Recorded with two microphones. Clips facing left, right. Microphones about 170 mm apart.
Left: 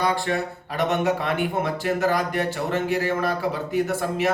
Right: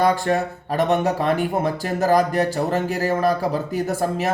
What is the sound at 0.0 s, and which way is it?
Speech, 45° right (ahead or behind).